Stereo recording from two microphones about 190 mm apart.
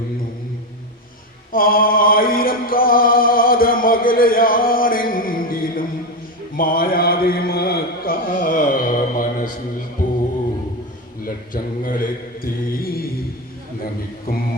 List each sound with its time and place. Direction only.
1.5 s music: 50° left (ahead or behind)
6.6 s mantra: 50° left (ahead or behind)
11.5 s mantra: 45° left (ahead or behind)
14.3 s music: 50° left (ahead or behind)